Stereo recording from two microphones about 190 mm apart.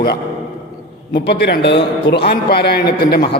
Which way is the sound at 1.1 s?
60° left (ahead or behind).